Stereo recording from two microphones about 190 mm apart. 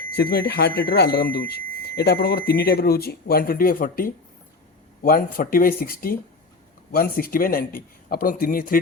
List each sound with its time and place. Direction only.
0.2 s speech: 60° left (ahead or behind)